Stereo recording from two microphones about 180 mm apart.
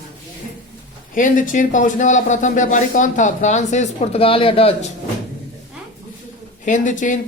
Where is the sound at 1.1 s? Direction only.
50° left (ahead or behind); by 4.9 s 30° left (ahead or behind).